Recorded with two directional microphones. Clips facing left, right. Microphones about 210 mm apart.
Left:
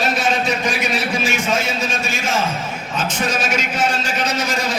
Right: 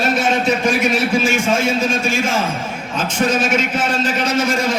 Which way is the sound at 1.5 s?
25° right (ahead or behind).